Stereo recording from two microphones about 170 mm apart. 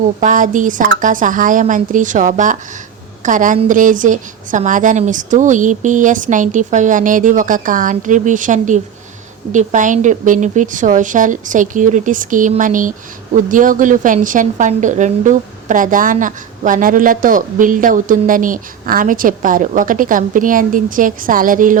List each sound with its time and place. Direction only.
0.2 s a woman's voice: 50° right (ahead or behind)